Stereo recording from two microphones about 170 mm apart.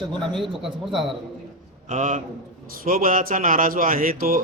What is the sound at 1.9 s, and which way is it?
A man's voice, 50° right (ahead or behind).